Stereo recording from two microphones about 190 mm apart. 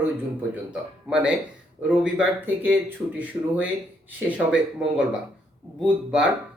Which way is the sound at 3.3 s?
20° right (ahead or behind).